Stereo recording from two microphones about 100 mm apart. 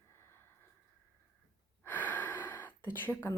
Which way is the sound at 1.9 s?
20° left (ahead or behind).